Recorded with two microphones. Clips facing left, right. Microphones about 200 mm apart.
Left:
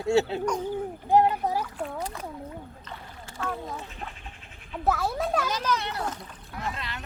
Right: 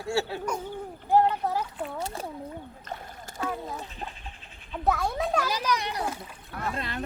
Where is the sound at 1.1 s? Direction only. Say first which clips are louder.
Left 1 dB; 15° left (ahead or behind).